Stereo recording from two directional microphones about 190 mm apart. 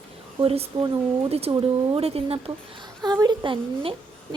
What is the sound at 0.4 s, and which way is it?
Speech, 30° right (ahead or behind).